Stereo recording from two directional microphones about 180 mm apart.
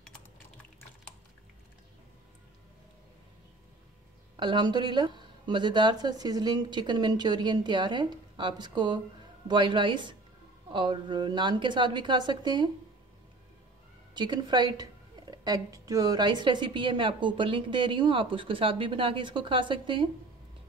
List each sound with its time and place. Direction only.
0.0 s typing: 5° left (ahead or behind)
4.4 s a woman's voice: 25° right (ahead or behind)
14.1 s a woman's voice: 25° right (ahead or behind)